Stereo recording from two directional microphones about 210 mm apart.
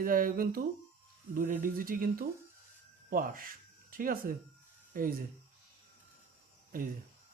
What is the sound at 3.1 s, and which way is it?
Speech, 45° right (ahead or behind).